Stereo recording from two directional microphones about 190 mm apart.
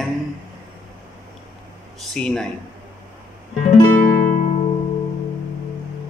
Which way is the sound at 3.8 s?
10° left (ahead or behind).